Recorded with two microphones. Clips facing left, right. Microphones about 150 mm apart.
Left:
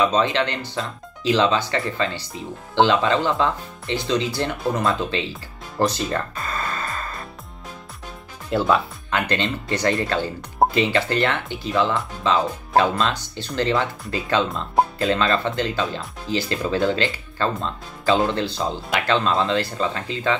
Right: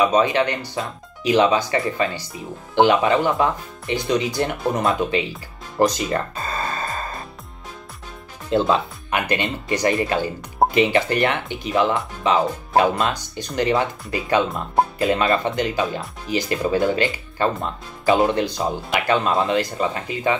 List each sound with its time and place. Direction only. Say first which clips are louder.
0.0 s speech: right 2 dB; 15° right (ahead or behind)
6.4 s music: right 2 dB; 25° right (ahead or behind)
8.5 s speech: right 1 dB; 25° right (ahead or behind)